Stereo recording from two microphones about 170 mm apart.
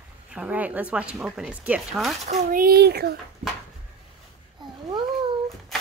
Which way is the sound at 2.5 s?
60° right (ahead or behind).